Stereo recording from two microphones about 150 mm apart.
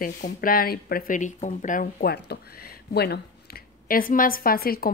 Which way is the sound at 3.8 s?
70° left (ahead or behind).